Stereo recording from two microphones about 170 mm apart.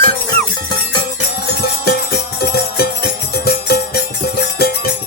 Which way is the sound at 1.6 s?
70° left (ahead or behind).